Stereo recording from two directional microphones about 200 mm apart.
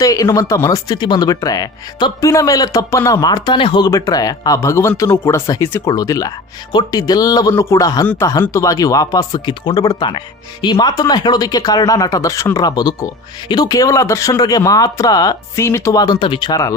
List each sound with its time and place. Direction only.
0.0 s speech: 15° left (ahead or behind)